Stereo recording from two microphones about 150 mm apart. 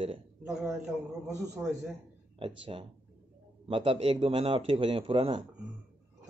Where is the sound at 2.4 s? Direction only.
40° right (ahead or behind).